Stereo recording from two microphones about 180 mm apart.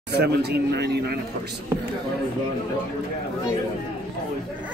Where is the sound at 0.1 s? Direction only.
65° right (ahead or behind).